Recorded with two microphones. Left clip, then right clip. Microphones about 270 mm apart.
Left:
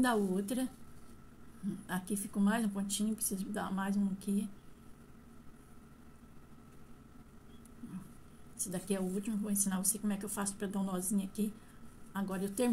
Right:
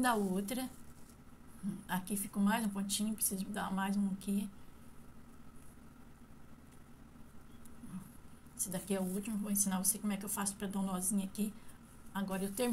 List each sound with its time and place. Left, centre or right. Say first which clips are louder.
0.0 s a woman's voice: left 1 dB; centre
1.9 s a woman's voice: right 1 dB; centre
8.5 s a woman's voice: left 1 dB; centre